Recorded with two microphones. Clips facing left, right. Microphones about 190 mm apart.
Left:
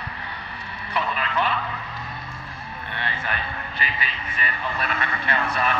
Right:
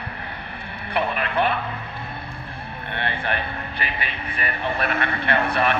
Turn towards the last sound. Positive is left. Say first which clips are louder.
# right 4 dB
turn(degrees=-60)  # may be behind; listen again after turning